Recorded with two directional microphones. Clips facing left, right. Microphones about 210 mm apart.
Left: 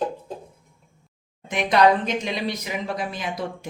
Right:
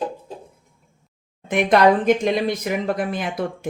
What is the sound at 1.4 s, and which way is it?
A woman's voice, 55° right (ahead or behind).